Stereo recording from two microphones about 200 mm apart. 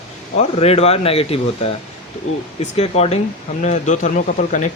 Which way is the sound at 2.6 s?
30° left (ahead or behind).